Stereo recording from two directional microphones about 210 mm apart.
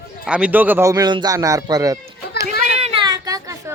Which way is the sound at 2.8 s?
25° right (ahead or behind).